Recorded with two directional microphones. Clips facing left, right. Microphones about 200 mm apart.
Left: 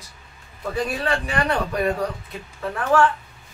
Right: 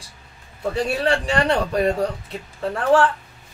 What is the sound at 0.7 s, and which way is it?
A man's voice, 30° right (ahead or behind).